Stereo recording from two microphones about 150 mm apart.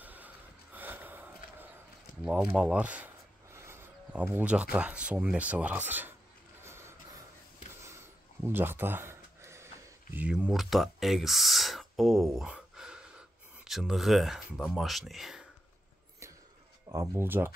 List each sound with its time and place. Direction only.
0.0 s snort: 10° right (ahead or behind)
0.7 s gasp: 10° right (ahead or behind)
2.5 s speech: 5° right (ahead or behind)
3.5 s a sound: 15° right (ahead or behind)
4.7 s speech: 5° right (ahead or behind)
6.6 s a sound: 15° right (ahead or behind)
10.1 s speech: 10° right (ahead or behind)
16.9 s speech: 20° right (ahead or behind)